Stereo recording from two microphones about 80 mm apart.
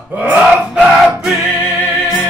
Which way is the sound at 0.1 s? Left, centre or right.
Centre.